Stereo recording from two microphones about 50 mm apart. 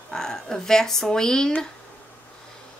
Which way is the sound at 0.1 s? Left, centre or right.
Centre.